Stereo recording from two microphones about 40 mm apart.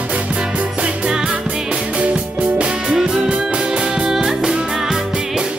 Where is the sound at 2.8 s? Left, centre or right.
Centre.